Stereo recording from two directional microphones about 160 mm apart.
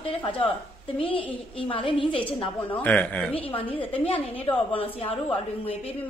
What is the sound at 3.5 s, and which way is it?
A woman's voice, 35° left (ahead or behind).